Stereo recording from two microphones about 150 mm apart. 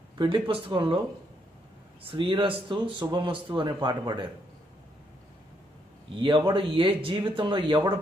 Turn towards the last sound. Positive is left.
turn(degrees=-35)  # may be behind; listen again after turning